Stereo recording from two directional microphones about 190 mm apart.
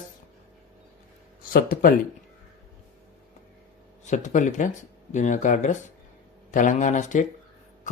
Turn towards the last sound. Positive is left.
turn(degrees=40)  # may be behind; listen again after turning